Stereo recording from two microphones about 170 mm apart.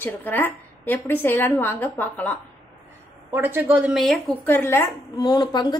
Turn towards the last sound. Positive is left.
turn(degrees=25)  # may be behind; listen again after turning